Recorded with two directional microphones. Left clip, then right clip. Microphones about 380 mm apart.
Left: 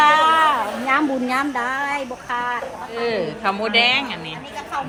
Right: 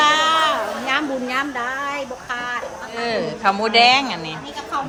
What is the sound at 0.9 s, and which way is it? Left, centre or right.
A woman's voice, left.